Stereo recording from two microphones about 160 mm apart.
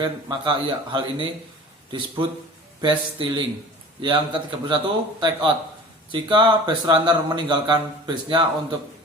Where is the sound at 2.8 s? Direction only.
30° right (ahead or behind).